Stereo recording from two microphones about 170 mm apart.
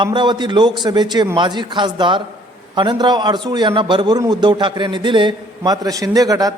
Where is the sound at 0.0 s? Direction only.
25° right (ahead or behind).